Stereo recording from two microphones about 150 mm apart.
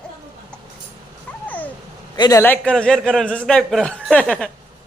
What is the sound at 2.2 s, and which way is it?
Speech, 25° left (ahead or behind).